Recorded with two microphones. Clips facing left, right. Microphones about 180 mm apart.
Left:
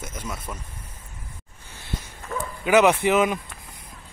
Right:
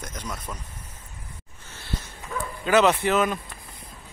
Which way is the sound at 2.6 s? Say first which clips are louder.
Left 2 dB; 15° left (ahead or behind).